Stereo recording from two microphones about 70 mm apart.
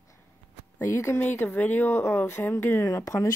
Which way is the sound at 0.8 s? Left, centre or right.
Left.